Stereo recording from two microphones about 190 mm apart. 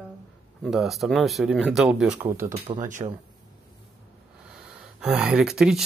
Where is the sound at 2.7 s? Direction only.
30° right (ahead or behind).